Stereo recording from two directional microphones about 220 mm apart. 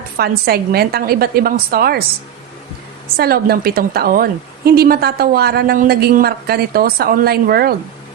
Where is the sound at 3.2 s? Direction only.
45° right (ahead or behind).